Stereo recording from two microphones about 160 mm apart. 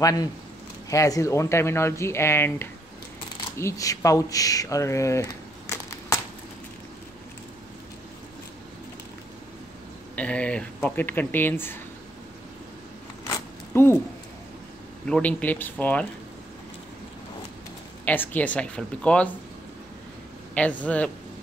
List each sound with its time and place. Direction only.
0.0 s speech: 20° left (ahead or behind)
5.7 s a sound: 20° left (ahead or behind)
10.1 s speech: 10° left (ahead or behind)
13.7 s speech: 15° left (ahead or behind)
15.0 s speech: 5° left (ahead or behind)
18.0 s speech: 10° left (ahead or behind)
20.5 s speech: 10° left (ahead or behind)